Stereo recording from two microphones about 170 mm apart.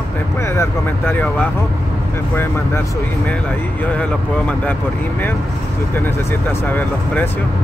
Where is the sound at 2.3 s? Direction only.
15° left (ahead or behind).